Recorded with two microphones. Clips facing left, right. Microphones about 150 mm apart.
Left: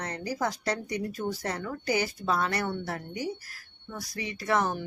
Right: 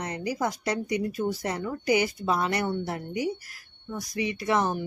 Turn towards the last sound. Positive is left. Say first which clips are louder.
# right 2 dB
turn(degrees=-15)  # may be behind; listen again after turning